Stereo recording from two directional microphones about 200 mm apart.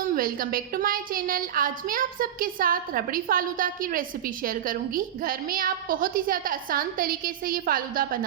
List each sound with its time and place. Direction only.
0.1 s a woman's voice: 45° right (ahead or behind)